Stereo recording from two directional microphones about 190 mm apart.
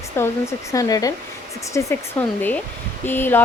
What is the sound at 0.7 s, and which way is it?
Speech, 20° left (ahead or behind).